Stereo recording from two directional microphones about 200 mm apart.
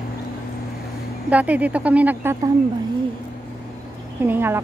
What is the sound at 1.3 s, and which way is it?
Speech, 5° right (ahead or behind).